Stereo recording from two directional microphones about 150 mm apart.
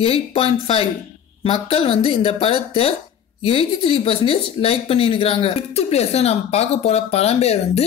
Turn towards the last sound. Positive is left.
turn(degrees=45)  # may be behind; listen again after turning